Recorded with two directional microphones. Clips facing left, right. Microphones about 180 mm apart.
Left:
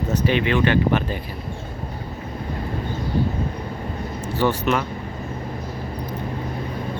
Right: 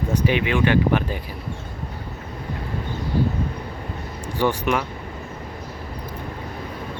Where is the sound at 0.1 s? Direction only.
10° right (ahead or behind).